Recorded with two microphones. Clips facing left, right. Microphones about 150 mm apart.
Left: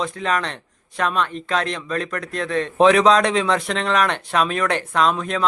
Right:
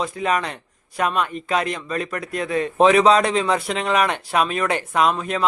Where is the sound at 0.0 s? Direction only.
10° right (ahead or behind).